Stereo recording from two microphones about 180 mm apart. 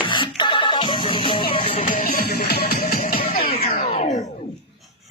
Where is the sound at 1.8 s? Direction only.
55° left (ahead or behind).